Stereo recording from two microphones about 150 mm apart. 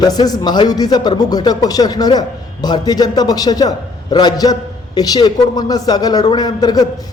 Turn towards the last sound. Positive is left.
turn(degrees=25)  # may be behind; listen again after turning